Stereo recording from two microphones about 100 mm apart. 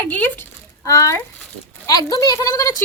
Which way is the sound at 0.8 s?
35° left (ahead or behind).